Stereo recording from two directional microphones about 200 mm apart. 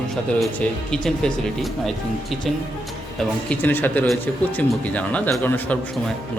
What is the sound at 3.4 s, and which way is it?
A man's voice, 10° left (ahead or behind).